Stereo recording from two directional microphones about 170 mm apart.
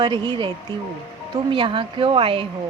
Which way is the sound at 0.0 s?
25° right (ahead or behind).